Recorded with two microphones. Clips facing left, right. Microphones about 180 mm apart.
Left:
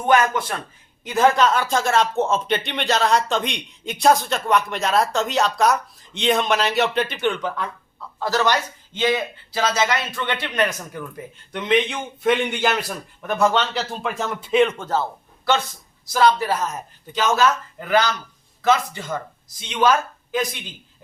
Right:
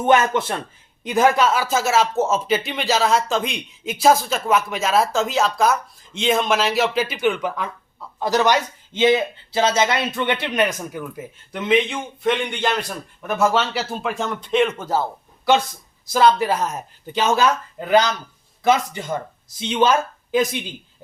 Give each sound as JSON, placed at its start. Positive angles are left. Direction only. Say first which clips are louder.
{"t": 0.0, "sound": "a man's voice", "louder": "right 1 dB", "side_deg": -25}
{"t": 1.0, "sound": "a man's voice", "louder": "even", "side_deg": -15}
{"t": 10.5, "sound": "speech", "louder": "right 2 dB", "side_deg": -10}
{"t": 16.1, "sound": "speech", "louder": "right 2 dB", "side_deg": -10}
{"t": 19.0, "sound": "a man's voice", "louder": "right 2 dB", "side_deg": -25}